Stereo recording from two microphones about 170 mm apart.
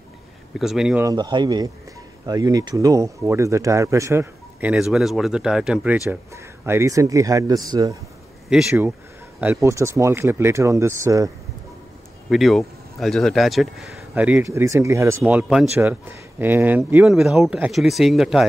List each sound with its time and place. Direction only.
0.6 s speech: 5° right (ahead or behind)
1.0 s speech: 25° right (ahead or behind); by 6.0 s 5° right (ahead or behind)
6.0 s speech: 15° right (ahead or behind)
8.5 s speech: 5° right (ahead or behind)
9.4 s speech: 15° right (ahead or behind)
12.3 s speech: centre (ahead or behind)